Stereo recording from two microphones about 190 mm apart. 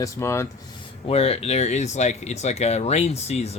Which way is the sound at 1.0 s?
30° left (ahead or behind).